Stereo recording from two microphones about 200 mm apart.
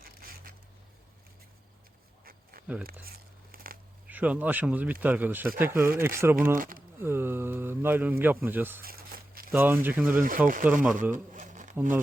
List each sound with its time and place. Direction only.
0.0 s a sound: 45° right (ahead or behind)
2.2 s a sound: 45° right (ahead or behind)
4.1 s speech: 10° right (ahead or behind)
6.6 s speech: 40° right (ahead or behind)
7.0 s speech: 10° right (ahead or behind)
8.8 s crumpling: 50° right (ahead or behind)
9.5 s speech: 10° right (ahead or behind)
10.2 s speech: 45° right (ahead or behind)
11.1 s a sound: 40° right (ahead or behind)